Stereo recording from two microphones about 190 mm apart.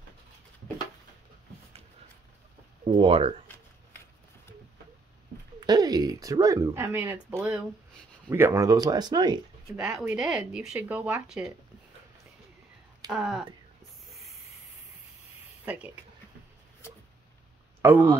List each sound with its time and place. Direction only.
3.0 s speech: 30° right (ahead or behind)
5.6 s speech: 20° right (ahead or behind)
9.8 s speech: 5° right (ahead or behind)
13.1 s speech: 5° right (ahead or behind)
15.6 s speech: 10° right (ahead or behind)
17.8 s speech: 10° right (ahead or behind)